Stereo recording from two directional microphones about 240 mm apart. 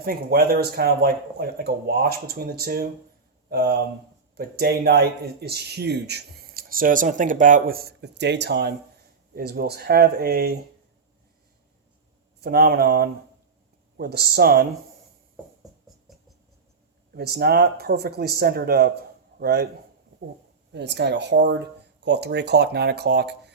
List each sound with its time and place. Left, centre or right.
0.0 s speech: right
12.4 s speech: right
17.2 s speech: right
20.7 s speech: right